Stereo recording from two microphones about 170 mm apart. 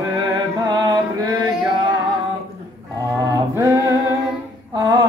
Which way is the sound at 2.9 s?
20° right (ahead or behind).